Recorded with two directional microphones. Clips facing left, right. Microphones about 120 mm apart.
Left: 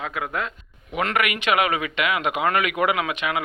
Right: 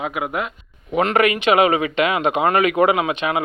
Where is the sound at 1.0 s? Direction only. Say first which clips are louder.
Right 6 dB; 30° right (ahead or behind).